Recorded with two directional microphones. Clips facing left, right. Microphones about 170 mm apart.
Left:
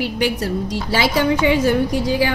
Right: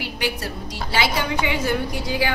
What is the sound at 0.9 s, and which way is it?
A woman's voice, 40° left (ahead or behind).